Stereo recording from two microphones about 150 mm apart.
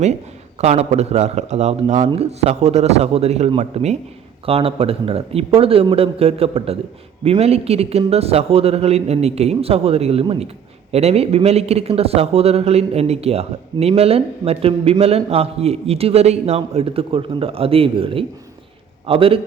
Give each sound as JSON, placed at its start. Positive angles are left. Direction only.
{"t": 0.6, "sound": "a man's voice", "side_deg": -45}